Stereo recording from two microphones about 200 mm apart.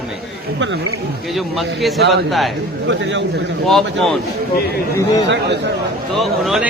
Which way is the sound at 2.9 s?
65° right (ahead or behind).